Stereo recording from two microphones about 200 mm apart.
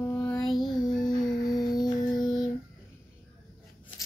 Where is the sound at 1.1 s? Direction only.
20° left (ahead or behind).